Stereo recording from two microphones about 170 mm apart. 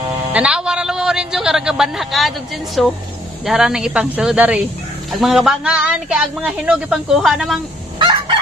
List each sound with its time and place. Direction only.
0.3 s a man's voice: 5° right (ahead or behind)
8.0 s fowl: 25° right (ahead or behind)